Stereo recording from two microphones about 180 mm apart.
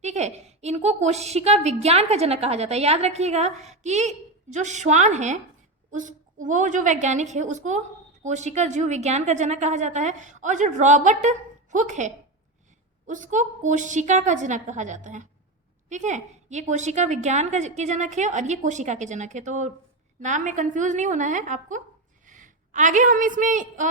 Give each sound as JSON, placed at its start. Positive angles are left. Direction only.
{"t": 0.0, "sound": "a woman's voice", "side_deg": -40}